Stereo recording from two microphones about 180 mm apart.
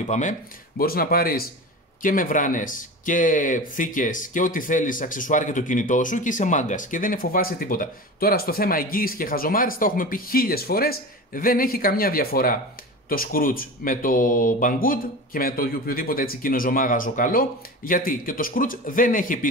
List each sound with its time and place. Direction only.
0.0 s speech: 40° left (ahead or behind)